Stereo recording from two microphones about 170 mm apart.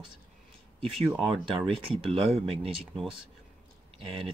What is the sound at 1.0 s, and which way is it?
Speech, centre (ahead or behind).